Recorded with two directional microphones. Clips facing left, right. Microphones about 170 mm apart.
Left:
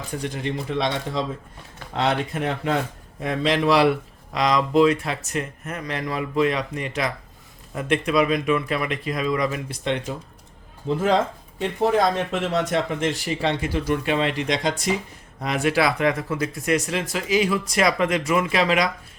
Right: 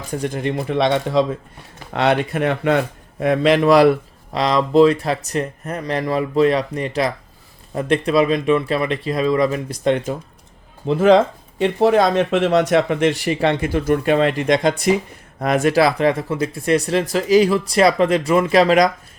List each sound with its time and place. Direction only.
0.1 s speech: 50° right (ahead or behind)
4.3 s speech: 30° right (ahead or behind)
10.8 s speech: 75° right (ahead or behind); by 18.9 s 40° right (ahead or behind)